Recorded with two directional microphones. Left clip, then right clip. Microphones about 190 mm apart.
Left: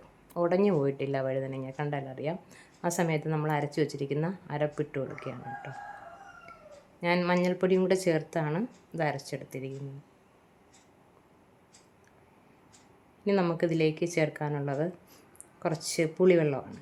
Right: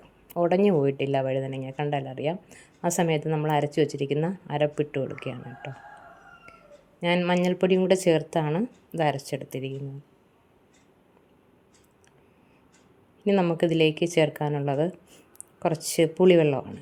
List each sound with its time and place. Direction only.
0.3 s speech: 20° right (ahead or behind)
7.0 s speech: 20° right (ahead or behind)
13.2 s speech: 15° right (ahead or behind)
13.6 s speech: 25° right (ahead or behind)